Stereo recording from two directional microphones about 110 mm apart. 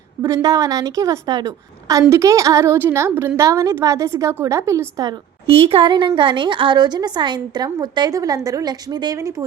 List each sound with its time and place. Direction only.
0.2 s a woman's voice: 30° right (ahead or behind)
5.5 s a woman's voice: 55° right (ahead or behind); by 9.5 s 30° right (ahead or behind)